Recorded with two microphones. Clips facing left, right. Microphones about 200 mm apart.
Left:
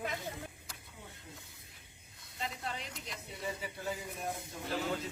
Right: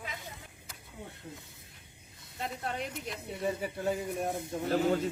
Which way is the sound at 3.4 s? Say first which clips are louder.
Right 8 dB; 55° right (ahead or behind).